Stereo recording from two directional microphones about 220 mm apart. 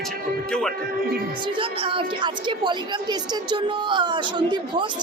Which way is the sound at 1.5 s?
25° right (ahead or behind).